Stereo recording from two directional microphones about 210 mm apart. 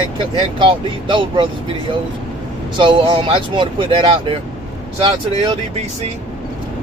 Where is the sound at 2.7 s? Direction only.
25° right (ahead or behind).